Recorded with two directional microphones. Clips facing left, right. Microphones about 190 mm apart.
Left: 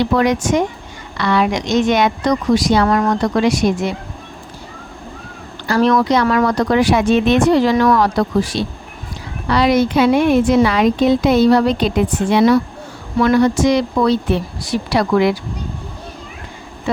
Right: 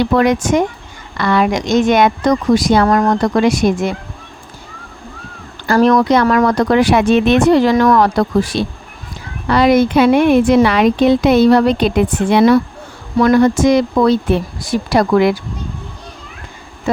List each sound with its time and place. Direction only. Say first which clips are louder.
0.2 s speech: right 2 dB; 55° right (ahead or behind)
5.6 s a woman's voice: right 3 dB; 50° right (ahead or behind)
13.1 s speech: right 2 dB; 45° right (ahead or behind)